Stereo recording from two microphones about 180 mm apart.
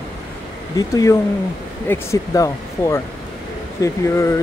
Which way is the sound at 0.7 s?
20° left (ahead or behind).